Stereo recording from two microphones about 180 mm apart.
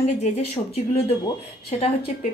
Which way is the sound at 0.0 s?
35° left (ahead or behind).